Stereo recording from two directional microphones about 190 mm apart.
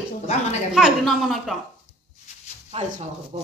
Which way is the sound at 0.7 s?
Centre (ahead or behind).